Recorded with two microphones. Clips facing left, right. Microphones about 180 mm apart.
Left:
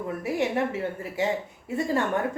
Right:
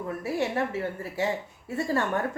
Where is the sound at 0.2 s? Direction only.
15° left (ahead or behind).